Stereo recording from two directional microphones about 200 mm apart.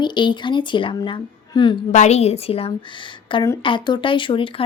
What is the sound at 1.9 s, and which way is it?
A woman's voice, 35° left (ahead or behind).